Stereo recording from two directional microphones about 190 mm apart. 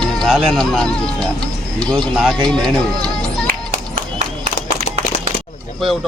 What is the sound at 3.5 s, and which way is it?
Music, 40° right (ahead or behind).